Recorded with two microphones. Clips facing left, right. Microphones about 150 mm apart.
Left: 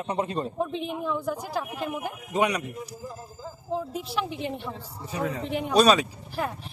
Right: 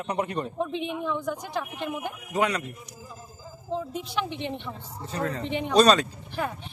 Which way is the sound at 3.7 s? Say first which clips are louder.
Even; 5° left (ahead or behind).